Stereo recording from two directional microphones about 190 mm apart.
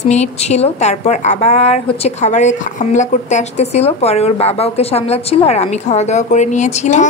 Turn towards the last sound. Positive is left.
turn(degrees=40)  # may be behind; listen again after turning